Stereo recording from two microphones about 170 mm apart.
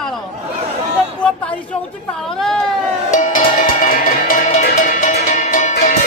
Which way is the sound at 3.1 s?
45° left (ahead or behind).